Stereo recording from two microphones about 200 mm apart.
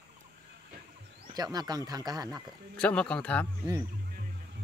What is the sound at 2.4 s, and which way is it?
Speech, 5° left (ahead or behind).